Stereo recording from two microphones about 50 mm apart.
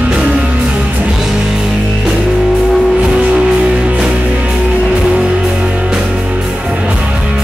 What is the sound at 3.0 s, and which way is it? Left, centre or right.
Music, centre.